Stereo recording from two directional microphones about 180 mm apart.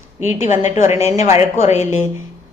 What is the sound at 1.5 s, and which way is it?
Speech, 40° left (ahead or behind).